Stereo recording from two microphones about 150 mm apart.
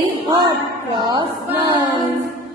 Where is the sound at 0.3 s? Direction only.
30° right (ahead or behind).